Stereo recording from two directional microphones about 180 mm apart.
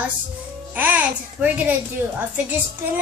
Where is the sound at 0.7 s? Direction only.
10° right (ahead or behind).